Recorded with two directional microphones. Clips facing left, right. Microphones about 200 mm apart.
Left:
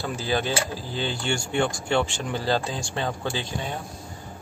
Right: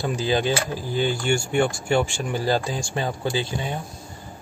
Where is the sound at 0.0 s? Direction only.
15° right (ahead or behind).